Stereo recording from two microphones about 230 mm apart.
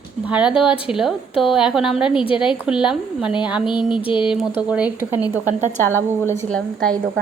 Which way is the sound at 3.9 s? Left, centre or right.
Left.